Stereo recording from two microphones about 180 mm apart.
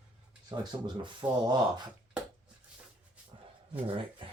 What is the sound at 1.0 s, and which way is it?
Speech, 25° right (ahead or behind).